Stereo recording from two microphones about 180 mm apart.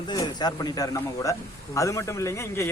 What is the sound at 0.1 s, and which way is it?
A man's voice, 25° left (ahead or behind).